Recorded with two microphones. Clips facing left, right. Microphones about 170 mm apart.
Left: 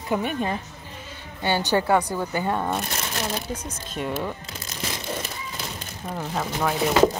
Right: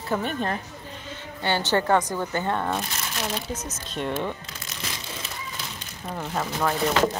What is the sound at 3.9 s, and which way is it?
Speech, 5° left (ahead or behind).